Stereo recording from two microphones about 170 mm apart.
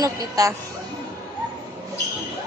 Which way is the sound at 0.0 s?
20° right (ahead or behind).